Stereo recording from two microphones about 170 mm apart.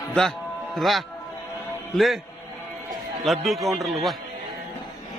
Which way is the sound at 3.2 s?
Centre (ahead or behind).